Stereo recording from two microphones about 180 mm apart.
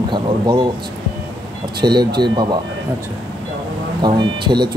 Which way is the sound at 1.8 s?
25° right (ahead or behind).